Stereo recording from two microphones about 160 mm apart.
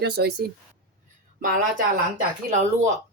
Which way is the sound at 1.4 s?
60° right (ahead or behind).